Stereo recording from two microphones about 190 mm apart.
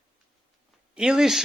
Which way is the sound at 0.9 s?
5° right (ahead or behind).